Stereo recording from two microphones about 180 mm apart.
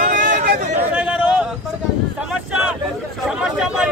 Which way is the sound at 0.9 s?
10° right (ahead or behind).